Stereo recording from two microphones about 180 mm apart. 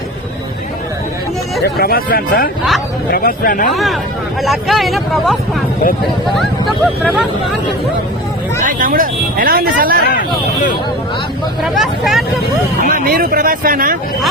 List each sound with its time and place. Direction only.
1.6 s speech: 60° left (ahead or behind)
4.4 s speech: centre (ahead or behind)
8.6 s speech: 50° right (ahead or behind)
10.1 s speech: 45° left (ahead or behind)
11.6 s speech: centre (ahead or behind)
12.8 s speech: 55° right (ahead or behind)